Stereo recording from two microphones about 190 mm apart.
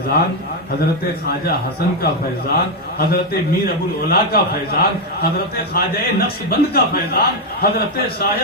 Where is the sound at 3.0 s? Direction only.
55° left (ahead or behind).